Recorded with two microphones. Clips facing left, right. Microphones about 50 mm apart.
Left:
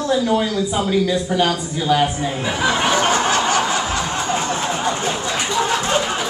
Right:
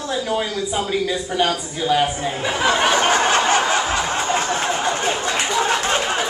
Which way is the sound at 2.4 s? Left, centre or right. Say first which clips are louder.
Right 1 dB; right.